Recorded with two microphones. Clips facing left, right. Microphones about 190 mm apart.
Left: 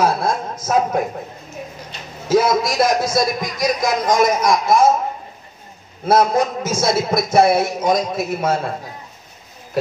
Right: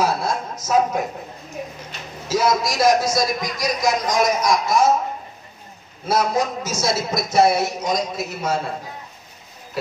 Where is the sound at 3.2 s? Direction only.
55° left (ahead or behind).